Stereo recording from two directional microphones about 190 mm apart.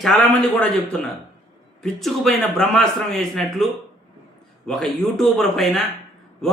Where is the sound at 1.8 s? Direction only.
Centre (ahead or behind).